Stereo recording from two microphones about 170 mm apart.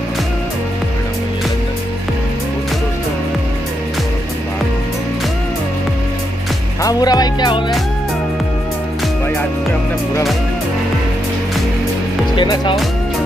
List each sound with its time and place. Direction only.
6.8 s music: 20° left (ahead or behind)
12.4 s music: 30° left (ahead or behind)